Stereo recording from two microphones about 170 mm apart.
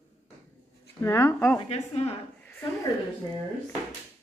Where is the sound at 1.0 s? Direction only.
15° left (ahead or behind).